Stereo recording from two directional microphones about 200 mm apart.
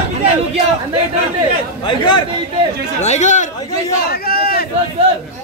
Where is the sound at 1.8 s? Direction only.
25° left (ahead or behind).